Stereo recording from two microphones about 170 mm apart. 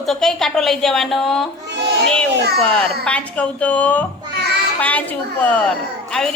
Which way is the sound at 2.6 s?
5° left (ahead or behind).